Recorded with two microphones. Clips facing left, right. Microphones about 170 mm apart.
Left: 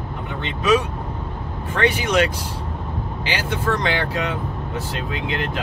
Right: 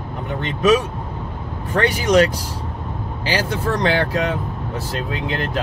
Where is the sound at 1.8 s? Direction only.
35° right (ahead or behind).